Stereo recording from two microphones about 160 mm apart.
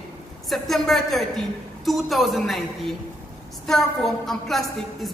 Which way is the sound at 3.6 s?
Centre (ahead or behind).